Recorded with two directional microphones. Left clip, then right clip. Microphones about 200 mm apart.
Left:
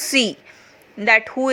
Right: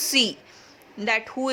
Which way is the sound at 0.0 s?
20° left (ahead or behind).